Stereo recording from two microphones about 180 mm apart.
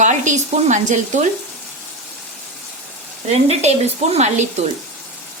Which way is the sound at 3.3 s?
35° right (ahead or behind).